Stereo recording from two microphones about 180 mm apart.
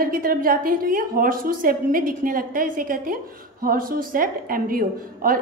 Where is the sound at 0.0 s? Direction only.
50° right (ahead or behind).